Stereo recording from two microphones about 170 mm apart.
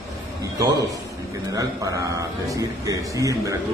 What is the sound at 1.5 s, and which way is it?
A man's voice, 20° right (ahead or behind).